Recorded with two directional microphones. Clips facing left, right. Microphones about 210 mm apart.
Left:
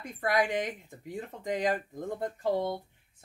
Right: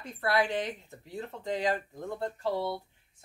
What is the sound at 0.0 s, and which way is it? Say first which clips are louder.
Speech: even; 15° left (ahead or behind).